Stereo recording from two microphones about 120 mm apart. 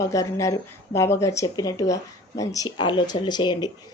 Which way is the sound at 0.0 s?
25° left (ahead or behind).